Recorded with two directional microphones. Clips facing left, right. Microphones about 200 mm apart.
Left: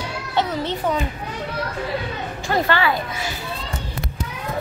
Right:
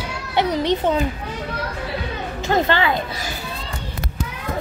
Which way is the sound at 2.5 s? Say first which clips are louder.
Right 1 dB; 20° right (ahead or behind).